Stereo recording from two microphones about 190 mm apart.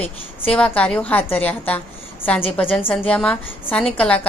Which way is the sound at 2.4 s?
30° left (ahead or behind).